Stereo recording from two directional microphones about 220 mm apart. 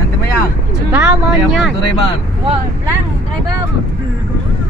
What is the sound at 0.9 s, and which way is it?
Speech, 5° right (ahead or behind).